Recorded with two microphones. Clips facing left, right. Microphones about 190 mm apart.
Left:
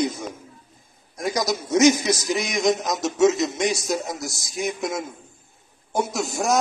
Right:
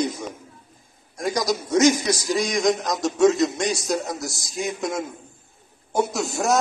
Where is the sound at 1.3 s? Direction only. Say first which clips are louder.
Even; 5° left (ahead or behind).